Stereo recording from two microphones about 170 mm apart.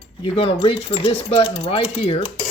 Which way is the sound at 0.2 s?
30° left (ahead or behind).